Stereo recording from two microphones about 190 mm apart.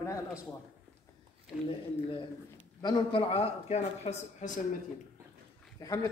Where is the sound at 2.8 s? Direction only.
25° left (ahead or behind).